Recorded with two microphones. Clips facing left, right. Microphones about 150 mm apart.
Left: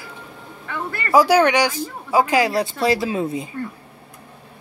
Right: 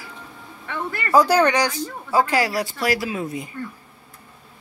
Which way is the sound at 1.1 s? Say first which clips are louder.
Left 2 dB; 5° left (ahead or behind).